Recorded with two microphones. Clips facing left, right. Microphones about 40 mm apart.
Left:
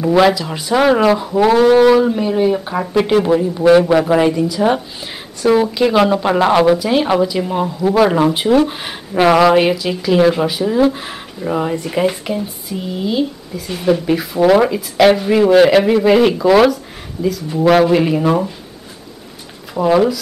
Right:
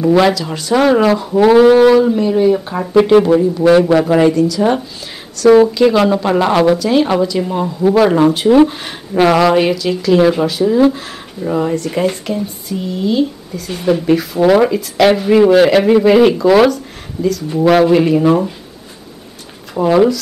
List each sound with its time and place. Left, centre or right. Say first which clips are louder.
0.0 s speech: right 1 dB; centre
4.4 s speech: right 2 dB; centre
5.4 s speech: right 6 dB; centre
5.8 s speech: right 2 dB; centre
19.7 s speech: right 2 dB; centre